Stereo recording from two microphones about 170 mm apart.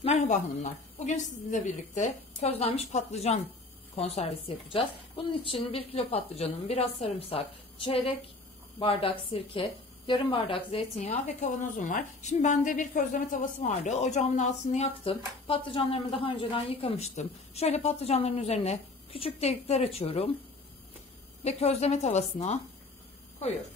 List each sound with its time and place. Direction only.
0.0 s speech: 40° left (ahead or behind)
21.5 s speech: 40° left (ahead or behind)